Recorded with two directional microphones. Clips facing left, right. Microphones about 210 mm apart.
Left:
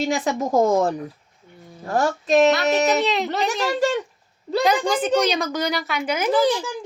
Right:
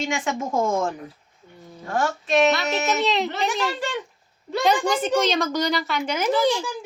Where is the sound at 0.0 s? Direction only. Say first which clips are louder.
Left 4 dB; 35° left (ahead or behind).